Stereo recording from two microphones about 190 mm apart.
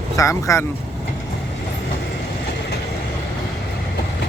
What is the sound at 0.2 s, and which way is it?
Speech, 15° left (ahead or behind).